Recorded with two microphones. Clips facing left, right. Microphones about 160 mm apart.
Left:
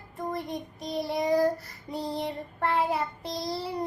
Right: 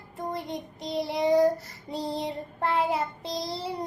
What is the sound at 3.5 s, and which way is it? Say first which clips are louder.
Music: left 1 dB; 20° right (ahead or behind).